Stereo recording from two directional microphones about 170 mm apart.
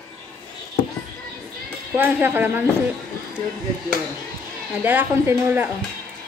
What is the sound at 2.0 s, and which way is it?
Speech, 10° right (ahead or behind).